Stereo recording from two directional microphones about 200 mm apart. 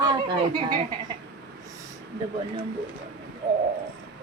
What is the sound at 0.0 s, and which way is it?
Speech, 20° right (ahead or behind).